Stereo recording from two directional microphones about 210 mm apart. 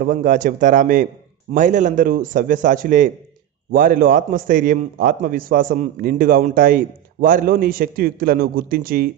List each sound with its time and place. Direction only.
0.0 s a man's voice: 40° right (ahead or behind)